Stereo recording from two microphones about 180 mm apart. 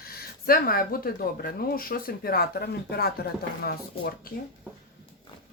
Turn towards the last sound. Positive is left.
turn(degrees=55)  # may be behind; listen again after turning